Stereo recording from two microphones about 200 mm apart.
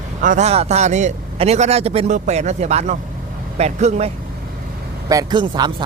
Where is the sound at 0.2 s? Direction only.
40° right (ahead or behind).